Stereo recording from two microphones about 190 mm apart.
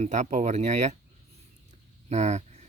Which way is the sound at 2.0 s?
35° right (ahead or behind).